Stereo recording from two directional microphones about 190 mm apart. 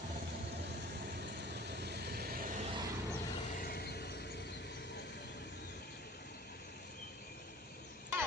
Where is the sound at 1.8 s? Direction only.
60° right (ahead or behind).